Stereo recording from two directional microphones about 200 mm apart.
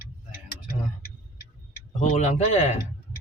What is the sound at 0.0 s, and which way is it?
Tick-tock, 50° left (ahead or behind).